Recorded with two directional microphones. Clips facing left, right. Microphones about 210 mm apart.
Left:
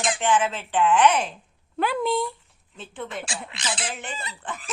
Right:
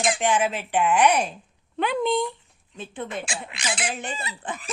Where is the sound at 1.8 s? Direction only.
5° left (ahead or behind).